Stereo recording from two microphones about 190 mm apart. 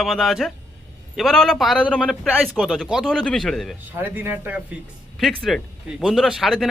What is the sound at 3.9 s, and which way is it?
A man's voice, 10° right (ahead or behind).